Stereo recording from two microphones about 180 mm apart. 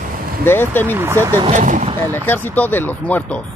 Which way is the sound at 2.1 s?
10° left (ahead or behind).